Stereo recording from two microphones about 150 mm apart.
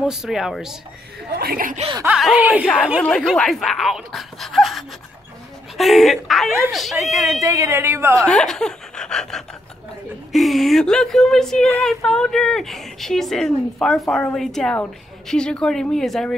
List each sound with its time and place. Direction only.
0.0 s speech: 5° right (ahead or behind)
1.3 s speech: 80° right
2.0 s speech: 5° right (ahead or behind)
2.6 s speech: 10° left (ahead or behind)
7.4 s a woman's voice: 20° right (ahead or behind)
8.3 s laughter: 5° left (ahead or behind)
10.3 s speech: centre (ahead or behind)